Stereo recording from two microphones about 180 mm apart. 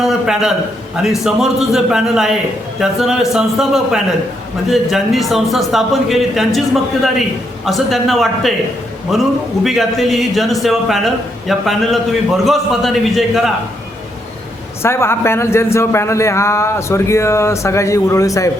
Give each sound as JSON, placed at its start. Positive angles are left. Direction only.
{"t": 0.0, "sound": "a sound", "side_deg": 0}
{"t": 1.2, "sound": "a man's voice", "side_deg": 0}
{"t": 14.8, "sound": "a man's voice", "side_deg": 15}